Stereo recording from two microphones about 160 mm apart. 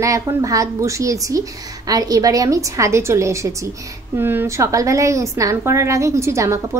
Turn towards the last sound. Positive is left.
turn(degrees=-20)  # may be behind; listen again after turning